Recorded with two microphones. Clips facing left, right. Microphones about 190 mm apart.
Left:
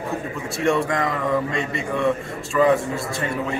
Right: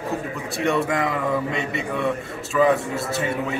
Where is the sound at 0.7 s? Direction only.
5° right (ahead or behind).